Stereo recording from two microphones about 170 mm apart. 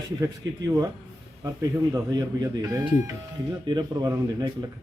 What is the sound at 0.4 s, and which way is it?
Speech, 90° right.